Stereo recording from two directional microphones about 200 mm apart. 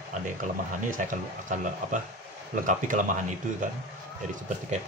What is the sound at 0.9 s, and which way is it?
Speech, 40° right (ahead or behind).